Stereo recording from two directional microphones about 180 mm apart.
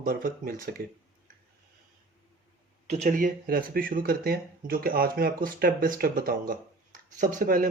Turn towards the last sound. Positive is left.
turn(degrees=-50)  # may be behind; listen again after turning